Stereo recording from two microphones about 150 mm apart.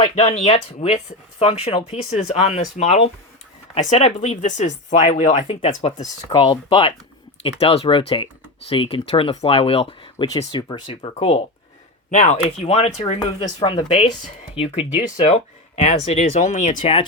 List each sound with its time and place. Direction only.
0.0 s speech: 50° left (ahead or behind)
6.0 s speech: 35° left (ahead or behind); by 16.8 s 55° left (ahead or behind)
16.8 s speech: 35° left (ahead or behind)